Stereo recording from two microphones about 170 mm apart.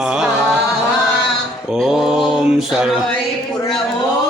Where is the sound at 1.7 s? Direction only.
5° right (ahead or behind).